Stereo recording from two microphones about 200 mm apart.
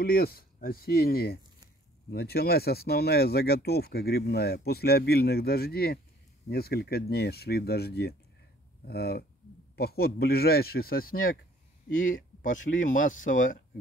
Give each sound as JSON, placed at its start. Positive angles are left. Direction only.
{"t": 0.0, "sound": "speech", "side_deg": 50}
{"t": 12.4, "sound": "speech", "side_deg": 40}